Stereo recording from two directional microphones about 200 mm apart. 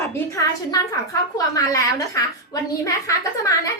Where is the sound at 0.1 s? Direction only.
15° left (ahead or behind).